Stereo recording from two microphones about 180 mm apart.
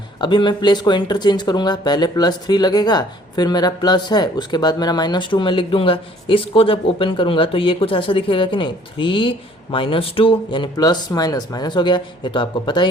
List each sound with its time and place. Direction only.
0.2 s speech: 25° left (ahead or behind)